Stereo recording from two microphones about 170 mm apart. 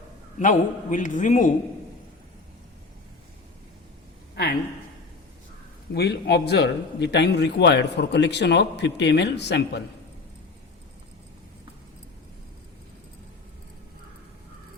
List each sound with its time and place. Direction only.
0.3 s a man's voice: 50° left (ahead or behind)
5.9 s a man's voice: 75° left (ahead or behind)